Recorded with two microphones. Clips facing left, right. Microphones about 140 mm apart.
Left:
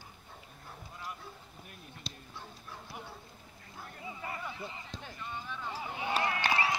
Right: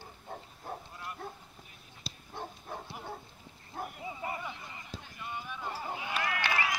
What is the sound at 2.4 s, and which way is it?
Dog, 55° right (ahead or behind).